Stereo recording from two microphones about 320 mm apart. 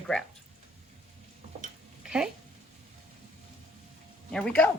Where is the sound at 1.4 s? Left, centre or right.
Right.